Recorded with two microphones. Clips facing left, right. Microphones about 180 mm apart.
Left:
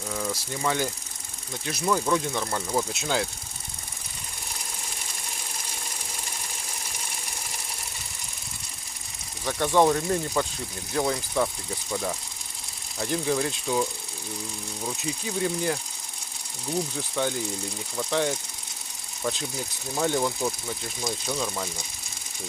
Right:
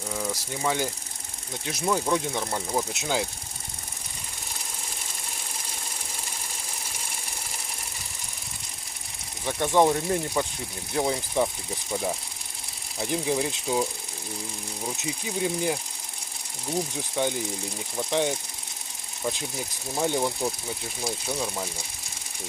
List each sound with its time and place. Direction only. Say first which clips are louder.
0.1 s speech: left 1 dB; 10° right (ahead or behind)
9.5 s speech: even; 15° right (ahead or behind)
14.8 s speech: left 1 dB; 10° right (ahead or behind)
17.2 s speech: right 1 dB; 15° right (ahead or behind)